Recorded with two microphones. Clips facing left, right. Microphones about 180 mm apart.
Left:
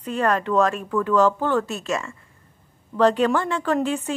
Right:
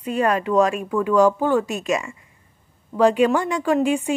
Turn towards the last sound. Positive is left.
turn(degrees=-15)  # may be behind; listen again after turning